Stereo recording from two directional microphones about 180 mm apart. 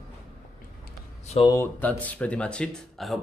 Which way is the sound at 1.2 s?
35° left (ahead or behind).